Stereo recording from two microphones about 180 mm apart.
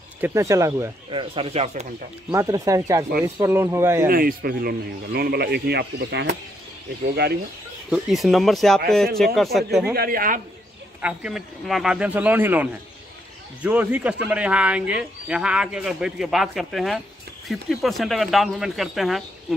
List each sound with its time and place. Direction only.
0.2 s speech: 15° right (ahead or behind)
1.3 s speech: 35° right (ahead or behind)
2.3 s speech: 20° right (ahead or behind)
4.1 s speech: 55° right (ahead or behind)
7.9 s speech: centre (ahead or behind)
9.9 s speech: 55° right (ahead or behind)
11.0 s speech: 5° right (ahead or behind)